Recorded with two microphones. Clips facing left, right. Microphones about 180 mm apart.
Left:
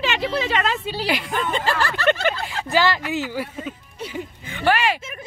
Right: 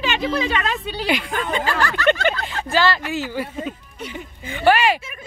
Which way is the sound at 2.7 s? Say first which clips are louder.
Even; 15° left (ahead or behind).